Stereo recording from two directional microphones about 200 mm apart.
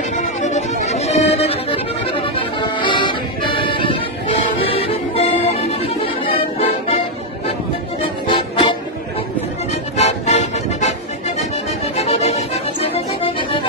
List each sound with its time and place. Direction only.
0.1 s accordion: 35° left (ahead or behind)
8.3 s music: 25° left (ahead or behind)
9.9 s music: 35° left (ahead or behind)
12.0 s accordion: 30° left (ahead or behind)